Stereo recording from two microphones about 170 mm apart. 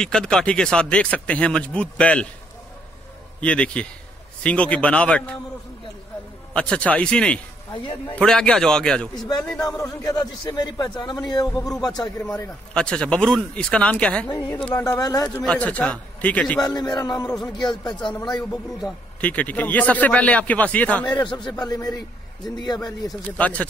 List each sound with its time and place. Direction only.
0.0 s speech: 5° left (ahead or behind)
3.3 s speech: 5° left (ahead or behind)
6.5 s speech: 5° left (ahead or behind)
9.6 s a man's voice: 20° left (ahead or behind)
12.2 s speech: 10° left (ahead or behind)
15.2 s speech: 5° left (ahead or behind)
16.6 s a man's voice: 25° left (ahead or behind)
17.3 s speech: centre (ahead or behind)
17.6 s a man's voice: 25° left (ahead or behind)
18.2 s speech: 5° left (ahead or behind)
21.0 s a man's voice: 25° left (ahead or behind)
23.3 s speech: 10° left (ahead or behind)